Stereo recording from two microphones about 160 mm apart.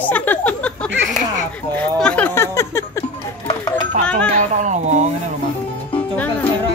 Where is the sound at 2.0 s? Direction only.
10° left (ahead or behind).